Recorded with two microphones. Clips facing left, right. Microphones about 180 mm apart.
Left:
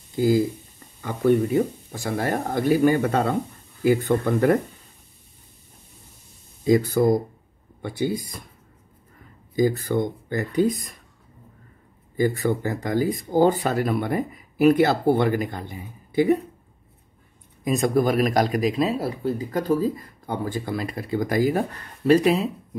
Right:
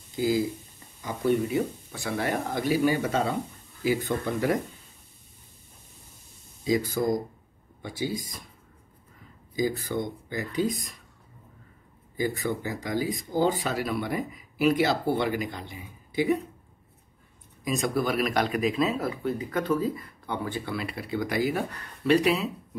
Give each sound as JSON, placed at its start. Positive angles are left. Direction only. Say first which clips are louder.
{"t": 0.1, "sound": "speech", "louder": "left 5 dB", "side_deg": 50}
{"t": 6.6, "sound": "speech", "louder": "left 7 dB", "side_deg": 55}
{"t": 9.6, "sound": "speech", "louder": "left 6 dB", "side_deg": 50}
{"t": 12.4, "sound": "speech", "louder": "left 6 dB", "side_deg": 50}
{"t": 17.6, "sound": "speech", "louder": "left 6 dB", "side_deg": 50}